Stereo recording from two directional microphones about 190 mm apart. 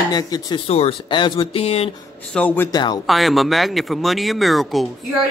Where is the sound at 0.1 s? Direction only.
20° left (ahead or behind).